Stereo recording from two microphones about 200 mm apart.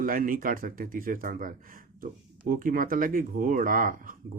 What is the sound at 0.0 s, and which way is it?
Speech, 45° right (ahead or behind).